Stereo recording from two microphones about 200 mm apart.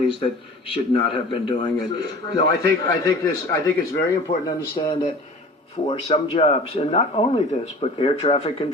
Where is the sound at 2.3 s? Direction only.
15° left (ahead or behind).